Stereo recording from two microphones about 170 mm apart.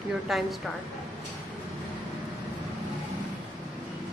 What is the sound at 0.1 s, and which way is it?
Speech, centre (ahead or behind).